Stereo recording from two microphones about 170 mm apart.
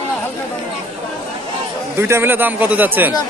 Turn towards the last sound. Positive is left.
turn(degrees=-10)  # may be behind; listen again after turning